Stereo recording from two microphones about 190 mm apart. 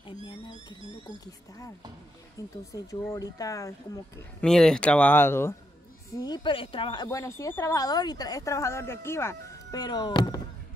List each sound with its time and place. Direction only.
0.3 s a woman's voice: 25° left (ahead or behind)
2.7 s speech: 15° left (ahead or behind)
4.4 s a woman's voice: 5° left (ahead or behind); by 10.4 s 20° left (ahead or behind)